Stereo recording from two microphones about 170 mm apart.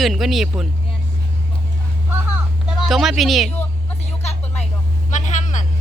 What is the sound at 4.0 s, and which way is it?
Music, 40° left (ahead or behind).